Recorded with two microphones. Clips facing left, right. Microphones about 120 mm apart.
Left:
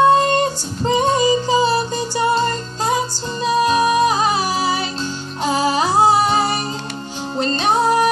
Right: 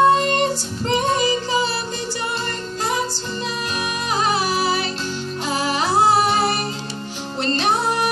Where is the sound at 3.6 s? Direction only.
30° left (ahead or behind).